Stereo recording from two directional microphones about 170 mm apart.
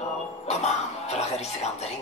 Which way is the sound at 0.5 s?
40° left (ahead or behind).